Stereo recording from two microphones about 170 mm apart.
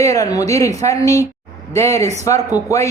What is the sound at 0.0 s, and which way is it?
A woman's voice, 20° left (ahead or behind).